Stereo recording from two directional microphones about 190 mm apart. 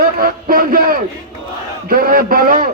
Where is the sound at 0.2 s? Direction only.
50° right (ahead or behind).